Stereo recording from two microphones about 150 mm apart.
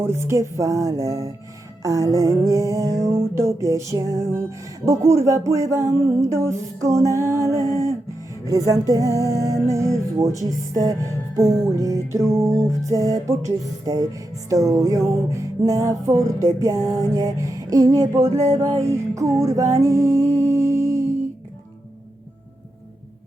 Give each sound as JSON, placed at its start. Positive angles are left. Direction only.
{"t": 0.0, "sound": "music", "side_deg": -15}
{"t": 18.7, "sound": "music", "side_deg": -45}
{"t": 18.9, "sound": "music", "side_deg": -20}